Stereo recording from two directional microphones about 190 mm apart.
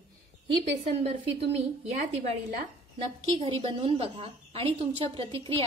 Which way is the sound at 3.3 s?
25° right (ahead or behind).